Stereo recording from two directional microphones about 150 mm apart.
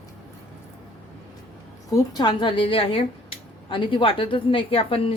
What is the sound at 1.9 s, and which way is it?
A man's voice, 30° left (ahead or behind).